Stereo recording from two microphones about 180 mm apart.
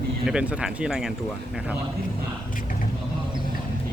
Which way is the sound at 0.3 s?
5° right (ahead or behind).